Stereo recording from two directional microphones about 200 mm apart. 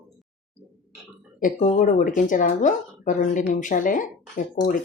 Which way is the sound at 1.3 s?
40° left (ahead or behind).